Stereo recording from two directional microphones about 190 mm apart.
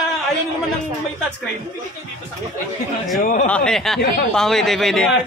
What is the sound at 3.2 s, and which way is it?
Speech, 45° left (ahead or behind).